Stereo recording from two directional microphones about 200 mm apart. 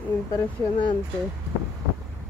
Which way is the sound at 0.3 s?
25° left (ahead or behind).